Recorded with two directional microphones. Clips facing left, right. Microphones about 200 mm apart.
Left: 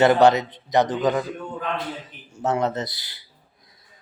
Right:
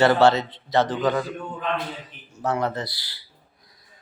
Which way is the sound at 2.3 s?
20° left (ahead or behind).